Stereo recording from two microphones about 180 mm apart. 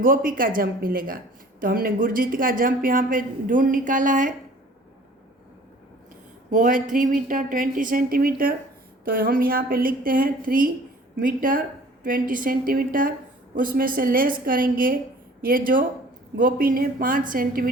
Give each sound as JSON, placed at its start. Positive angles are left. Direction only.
{"t": 0.0, "sound": "speech", "side_deg": -50}
{"t": 6.5, "sound": "speech", "side_deg": -50}